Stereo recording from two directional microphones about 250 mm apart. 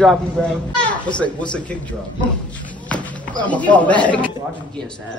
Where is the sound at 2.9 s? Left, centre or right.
Centre.